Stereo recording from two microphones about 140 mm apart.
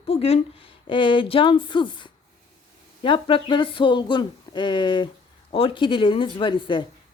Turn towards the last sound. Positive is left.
turn(degrees=35)  # may be behind; listen again after turning